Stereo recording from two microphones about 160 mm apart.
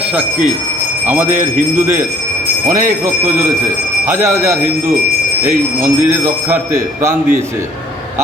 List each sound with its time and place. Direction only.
1.0 s speech: 10° right (ahead or behind)
4.0 s speech: 15° right (ahead or behind)
5.8 s speech: 15° right (ahead or behind)